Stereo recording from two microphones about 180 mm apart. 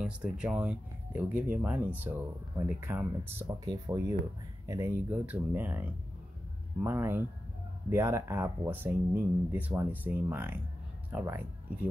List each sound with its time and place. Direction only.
0.0 s speech: 5° right (ahead or behind)